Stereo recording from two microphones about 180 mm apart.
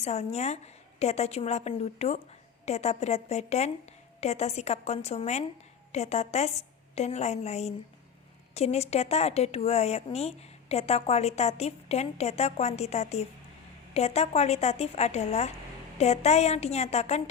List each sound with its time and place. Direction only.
0.0 s speech: 35° left (ahead or behind)